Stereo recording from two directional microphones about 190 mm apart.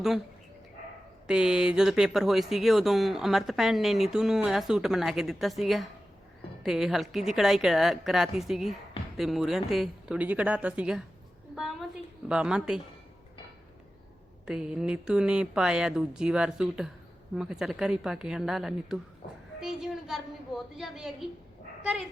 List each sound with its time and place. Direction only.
1.3 s a woman's voice: 5° right (ahead or behind)
14.4 s speech: 5° right (ahead or behind)
19.2 s a woman's voice: 50° left (ahead or behind)
19.5 s speech: 5° right (ahead or behind)